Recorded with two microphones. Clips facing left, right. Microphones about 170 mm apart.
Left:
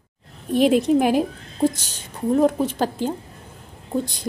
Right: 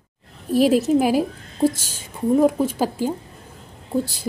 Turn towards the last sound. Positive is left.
turn(degrees=-5)  # may be behind; listen again after turning